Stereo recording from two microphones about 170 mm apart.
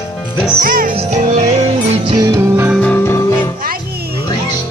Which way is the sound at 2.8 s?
10° left (ahead or behind).